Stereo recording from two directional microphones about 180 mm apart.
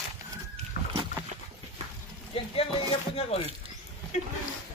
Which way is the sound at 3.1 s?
30° left (ahead or behind).